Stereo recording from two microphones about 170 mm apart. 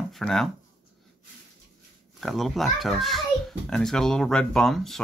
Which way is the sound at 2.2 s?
Centre (ahead or behind).